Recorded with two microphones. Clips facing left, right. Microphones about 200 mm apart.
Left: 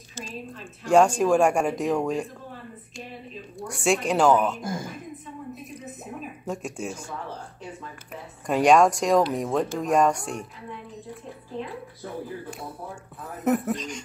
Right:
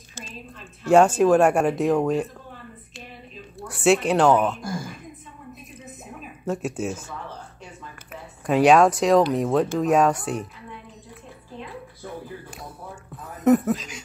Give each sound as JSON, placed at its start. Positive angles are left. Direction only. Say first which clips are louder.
{"t": 0.8, "sound": "speech", "louder": "right 3 dB", "side_deg": -5}
{"t": 3.5, "sound": "speech", "louder": "right 5 dB", "side_deg": -5}
{"t": 4.6, "sound": "speech", "louder": "even", "side_deg": 20}
{"t": 6.4, "sound": "speech", "louder": "right 6 dB", "side_deg": -5}
{"t": 8.1, "sound": "speech", "louder": "right 3 dB", "side_deg": -5}
{"t": 13.4, "sound": "speech", "louder": "right 6 dB", "side_deg": 0}